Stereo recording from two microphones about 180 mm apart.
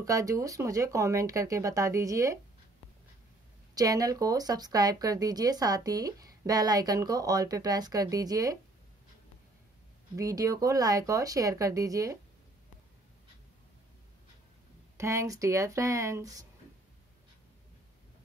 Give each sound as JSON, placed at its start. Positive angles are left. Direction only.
{"t": 0.0, "sound": "speech", "side_deg": -20}
{"t": 3.7, "sound": "speech", "side_deg": -20}
{"t": 10.1, "sound": "speech", "side_deg": -20}
{"t": 15.0, "sound": "speech", "side_deg": -15}